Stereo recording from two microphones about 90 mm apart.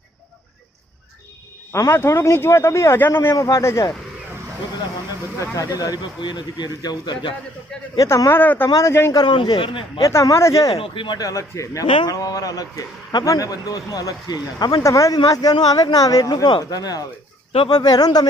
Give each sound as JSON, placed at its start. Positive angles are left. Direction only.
{"t": 1.7, "sound": "a man's voice", "side_deg": 30}
{"t": 5.6, "sound": "a man's voice", "side_deg": 45}
{"t": 8.0, "sound": "a man's voice", "side_deg": 40}
{"t": 8.3, "sound": "speech", "side_deg": 20}
{"t": 9.1, "sound": "a man's voice", "side_deg": 60}
{"t": 10.0, "sound": "a man's voice", "side_deg": 35}
{"t": 10.7, "sound": "speech", "side_deg": 80}
{"t": 11.1, "sound": "a man's voice", "side_deg": 40}